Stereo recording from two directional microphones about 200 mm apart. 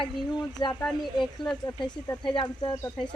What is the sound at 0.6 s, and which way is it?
A man's voice, 20° left (ahead or behind).